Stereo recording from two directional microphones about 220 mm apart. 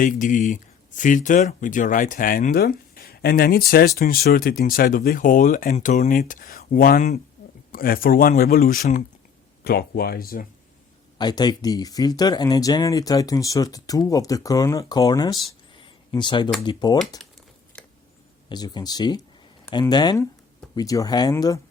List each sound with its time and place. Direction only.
0.0 s speech: 35° left (ahead or behind)
11.2 s speech: 20° left (ahead or behind)
17.7 s a sound: 5° left (ahead or behind)
18.4 s speech: 20° left (ahead or behind)